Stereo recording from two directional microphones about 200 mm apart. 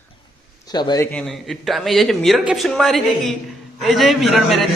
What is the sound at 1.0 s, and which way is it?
Speech, 5° left (ahead or behind).